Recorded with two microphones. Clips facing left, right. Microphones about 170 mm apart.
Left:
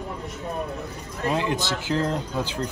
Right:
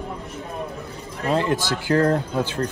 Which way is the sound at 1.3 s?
15° left (ahead or behind).